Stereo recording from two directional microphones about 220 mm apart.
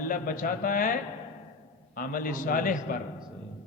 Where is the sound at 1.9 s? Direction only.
40° left (ahead or behind).